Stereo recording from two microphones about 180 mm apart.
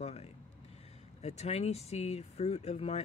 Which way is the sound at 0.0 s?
35° left (ahead or behind).